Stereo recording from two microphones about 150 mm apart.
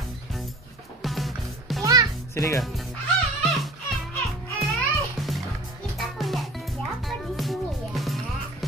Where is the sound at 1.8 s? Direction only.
25° right (ahead or behind).